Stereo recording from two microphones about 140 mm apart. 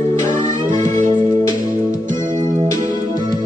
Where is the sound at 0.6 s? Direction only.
65° right (ahead or behind).